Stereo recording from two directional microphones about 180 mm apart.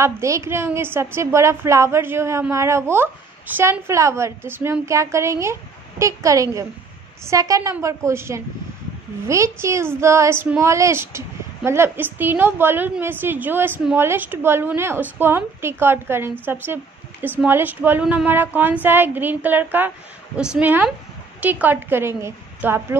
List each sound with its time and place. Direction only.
0.0 s a woman's voice: 15° right (ahead or behind)